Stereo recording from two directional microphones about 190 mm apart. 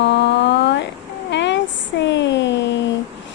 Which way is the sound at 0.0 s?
65° left (ahead or behind).